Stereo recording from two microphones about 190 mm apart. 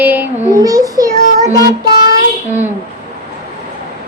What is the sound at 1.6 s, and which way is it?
Child singing, 20° right (ahead or behind).